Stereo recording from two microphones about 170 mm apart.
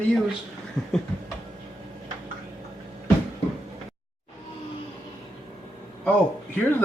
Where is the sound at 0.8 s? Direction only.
Centre (ahead or behind).